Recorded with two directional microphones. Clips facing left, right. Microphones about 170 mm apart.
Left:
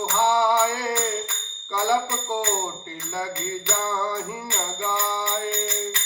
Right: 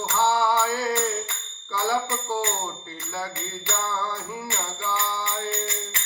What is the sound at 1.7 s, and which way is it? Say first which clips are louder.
Jingle bell: left 2 dB; 15° left (ahead or behind).